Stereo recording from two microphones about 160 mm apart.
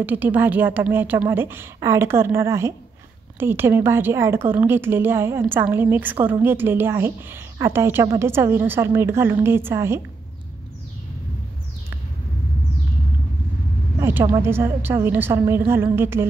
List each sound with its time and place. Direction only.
0.0 s a woman's voice: 10° right (ahead or behind)
13.9 s vehicle: 15° right (ahead or behind)
14.4 s a woman's voice: 15° right (ahead or behind)